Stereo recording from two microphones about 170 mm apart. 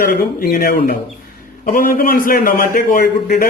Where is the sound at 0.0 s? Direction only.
60° left (ahead or behind).